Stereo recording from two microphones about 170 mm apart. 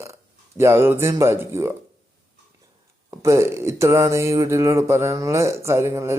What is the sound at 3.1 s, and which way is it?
Speech, 15° right (ahead or behind).